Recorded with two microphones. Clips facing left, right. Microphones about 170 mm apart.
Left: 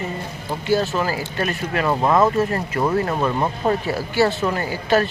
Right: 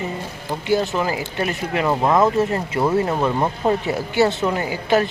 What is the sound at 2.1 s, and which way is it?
Speech, 20° right (ahead or behind).